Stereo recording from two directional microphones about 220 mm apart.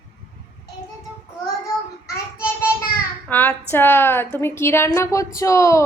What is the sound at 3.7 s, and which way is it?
A woman's voice, 10° left (ahead or behind).